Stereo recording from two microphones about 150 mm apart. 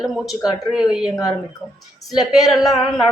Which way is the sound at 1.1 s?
25° left (ahead or behind).